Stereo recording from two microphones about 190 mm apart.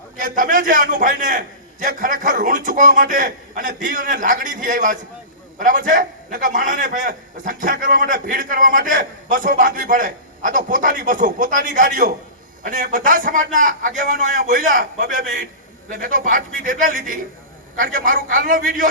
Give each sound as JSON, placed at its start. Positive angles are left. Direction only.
{"t": 0.2, "sound": "a man's voice", "side_deg": -45}